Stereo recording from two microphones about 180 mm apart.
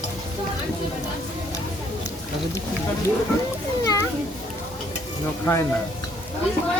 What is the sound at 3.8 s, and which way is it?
Children playing, 20° left (ahead or behind).